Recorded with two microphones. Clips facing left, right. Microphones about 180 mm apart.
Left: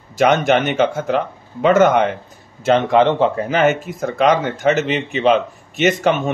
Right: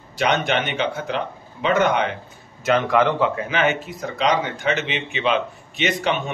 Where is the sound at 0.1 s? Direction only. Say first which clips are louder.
Left 7 dB; 45° left (ahead or behind).